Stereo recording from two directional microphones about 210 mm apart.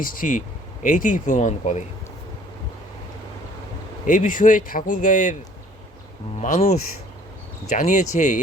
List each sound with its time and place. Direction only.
0.0 s speech: 40° left (ahead or behind)
4.0 s speech: 40° left (ahead or behind)
6.4 s speech: 35° left (ahead or behind)